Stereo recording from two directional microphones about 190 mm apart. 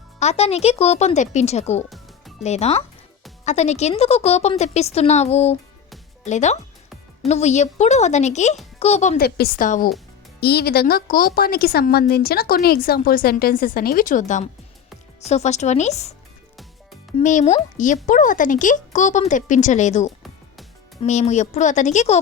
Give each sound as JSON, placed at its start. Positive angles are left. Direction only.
{"t": 0.2, "sound": "speech", "side_deg": 35}
{"t": 9.2, "sound": "a woman's voice", "side_deg": 55}
{"t": 10.4, "sound": "a woman's voice", "side_deg": 55}
{"t": 17.2, "sound": "speech", "side_deg": 40}